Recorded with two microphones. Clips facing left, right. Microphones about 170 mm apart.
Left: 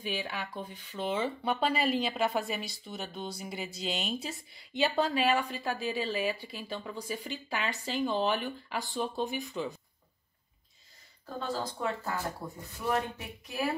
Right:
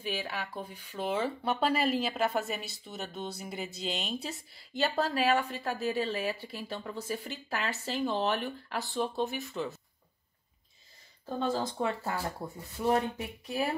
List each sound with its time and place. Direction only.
0.0 s speech: centre (ahead or behind)
11.3 s speech: 20° right (ahead or behind)